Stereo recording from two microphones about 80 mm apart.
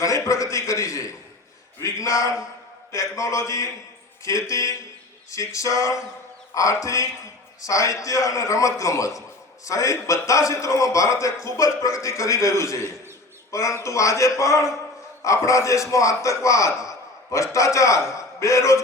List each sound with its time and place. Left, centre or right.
0.0 s a man's voice: left